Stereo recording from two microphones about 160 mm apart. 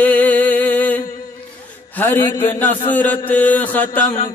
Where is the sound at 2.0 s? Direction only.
15° left (ahead or behind).